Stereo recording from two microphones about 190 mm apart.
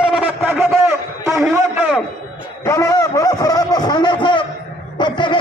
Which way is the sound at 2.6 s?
15° left (ahead or behind).